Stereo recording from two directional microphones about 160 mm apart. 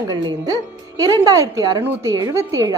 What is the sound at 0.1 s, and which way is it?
A woman's voice, 25° right (ahead or behind).